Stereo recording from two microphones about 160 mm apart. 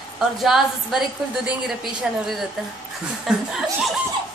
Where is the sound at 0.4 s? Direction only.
Centre (ahead or behind).